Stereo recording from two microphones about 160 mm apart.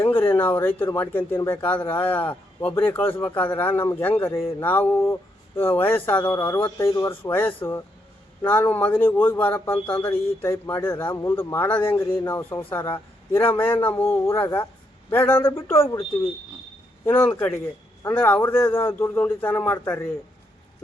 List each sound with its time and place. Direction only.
0.0 s a sound: 15° left (ahead or behind)
0.9 s a man's voice: 15° left (ahead or behind)
17.1 s a man's voice: 10° left (ahead or behind)